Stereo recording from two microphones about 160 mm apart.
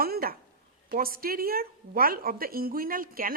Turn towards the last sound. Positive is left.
turn(degrees=-65)  # may be behind; listen again after turning